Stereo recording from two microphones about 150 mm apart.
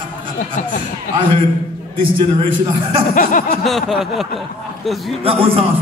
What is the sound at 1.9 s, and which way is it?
Speech, 35° right (ahead or behind).